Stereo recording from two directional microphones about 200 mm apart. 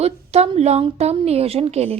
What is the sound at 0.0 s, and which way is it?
A woman's voice, 30° right (ahead or behind).